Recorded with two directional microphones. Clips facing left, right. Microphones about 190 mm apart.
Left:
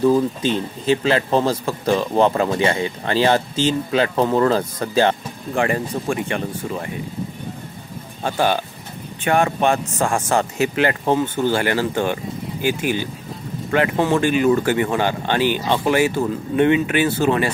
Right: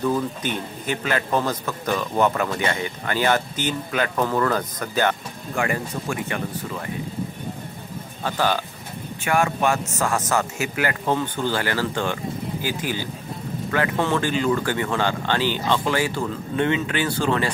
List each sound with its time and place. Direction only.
0.0 s a man's voice: 30° left (ahead or behind)
8.2 s a man's voice: 20° left (ahead or behind)
9.2 s a man's voice: 30° left (ahead or behind); by 17.5 s 15° left (ahead or behind)